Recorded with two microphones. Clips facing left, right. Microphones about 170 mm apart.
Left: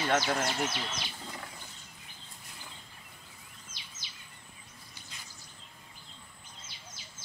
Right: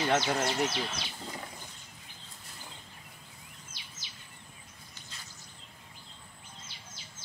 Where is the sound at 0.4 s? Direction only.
Centre (ahead or behind).